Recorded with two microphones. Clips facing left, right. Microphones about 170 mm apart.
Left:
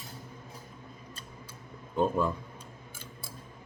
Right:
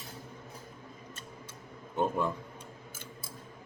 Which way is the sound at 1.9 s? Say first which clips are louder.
Left 3 dB; 20° right (ahead or behind).